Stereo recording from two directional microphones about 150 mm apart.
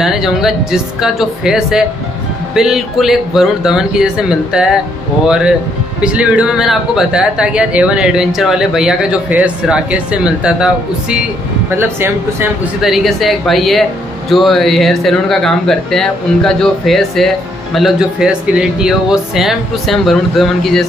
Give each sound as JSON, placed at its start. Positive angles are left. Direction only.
{"t": 0.0, "sound": "speech", "side_deg": -5}
{"t": 12.8, "sound": "speech", "side_deg": 0}